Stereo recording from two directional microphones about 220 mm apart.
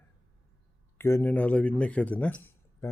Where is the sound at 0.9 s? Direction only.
10° left (ahead or behind).